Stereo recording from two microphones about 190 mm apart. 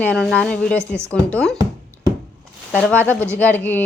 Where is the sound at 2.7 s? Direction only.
5° left (ahead or behind).